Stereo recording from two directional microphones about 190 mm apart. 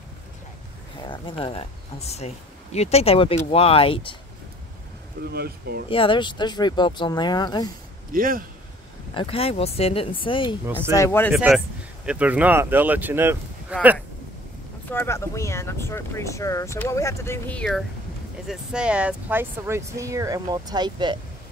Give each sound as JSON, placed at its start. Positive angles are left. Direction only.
{"t": 1.0, "sound": "speech", "side_deg": 25}
{"t": 5.3, "sound": "speech", "side_deg": -55}
{"t": 5.9, "sound": "speech", "side_deg": 25}
{"t": 8.1, "sound": "speech", "side_deg": -50}
{"t": 9.1, "sound": "speech", "side_deg": 30}
{"t": 11.0, "sound": "speech", "side_deg": 10}
{"t": 11.3, "sound": "speech", "side_deg": 0}
{"t": 14.9, "sound": "speech", "side_deg": 10}